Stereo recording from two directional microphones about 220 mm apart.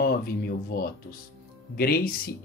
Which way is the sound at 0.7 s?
45° left (ahead or behind).